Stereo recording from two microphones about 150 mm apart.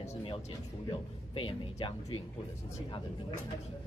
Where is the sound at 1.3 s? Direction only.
35° left (ahead or behind).